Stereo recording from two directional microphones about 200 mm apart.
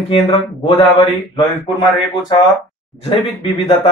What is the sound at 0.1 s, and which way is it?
Speech, 30° left (ahead or behind).